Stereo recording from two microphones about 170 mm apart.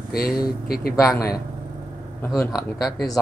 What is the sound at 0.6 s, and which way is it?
Speech, 65° left (ahead or behind).